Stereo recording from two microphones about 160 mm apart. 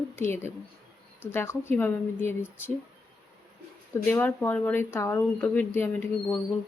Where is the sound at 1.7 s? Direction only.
15° left (ahead or behind).